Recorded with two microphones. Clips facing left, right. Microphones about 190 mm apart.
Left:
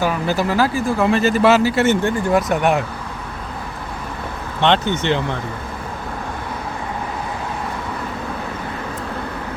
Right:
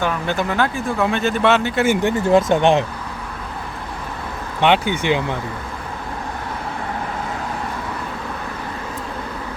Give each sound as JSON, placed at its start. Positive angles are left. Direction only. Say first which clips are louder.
{"t": 0.0, "sound": "speech", "louder": "left 2 dB", "side_deg": 5}
{"t": 1.9, "sound": "speech", "louder": "right 1 dB", "side_deg": -20}
{"t": 4.6, "sound": "speech", "louder": "even", "side_deg": -10}